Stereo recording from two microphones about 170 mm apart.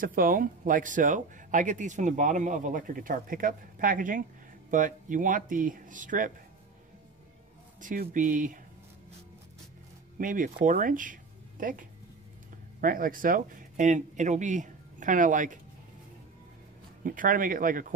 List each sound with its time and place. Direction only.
0.0 s speech: 55° right (ahead or behind)
7.8 s speech: 50° right (ahead or behind)
10.1 s speech: 50° right (ahead or behind)
12.8 s speech: 55° right (ahead or behind)
17.0 s speech: 55° right (ahead or behind)